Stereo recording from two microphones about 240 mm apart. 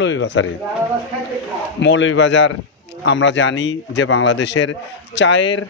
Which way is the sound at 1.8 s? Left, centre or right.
Left.